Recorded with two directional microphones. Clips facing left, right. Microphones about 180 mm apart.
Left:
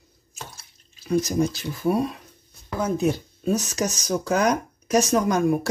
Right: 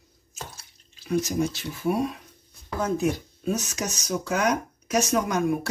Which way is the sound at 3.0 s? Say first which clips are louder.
Left 2 dB; 30° left (ahead or behind).